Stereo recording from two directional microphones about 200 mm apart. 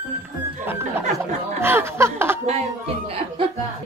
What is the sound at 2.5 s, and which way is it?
Speech, 30° right (ahead or behind).